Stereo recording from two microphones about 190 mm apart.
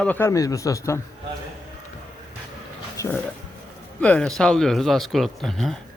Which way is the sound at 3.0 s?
15° left (ahead or behind).